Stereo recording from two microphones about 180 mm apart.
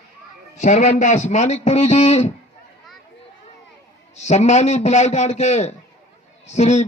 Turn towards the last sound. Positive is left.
turn(degrees=40)  # may be behind; listen again after turning